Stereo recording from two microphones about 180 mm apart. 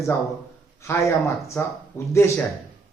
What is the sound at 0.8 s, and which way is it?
A man's voice, 15° left (ahead or behind).